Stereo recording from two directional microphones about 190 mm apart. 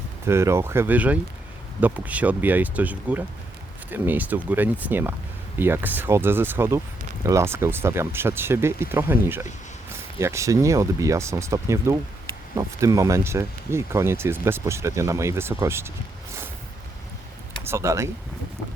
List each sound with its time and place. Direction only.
0.3 s speech: 15° right (ahead or behind)
17.6 s speech: 15° right (ahead or behind)